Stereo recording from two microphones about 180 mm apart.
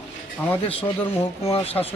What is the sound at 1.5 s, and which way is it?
Speech, 35° left (ahead or behind).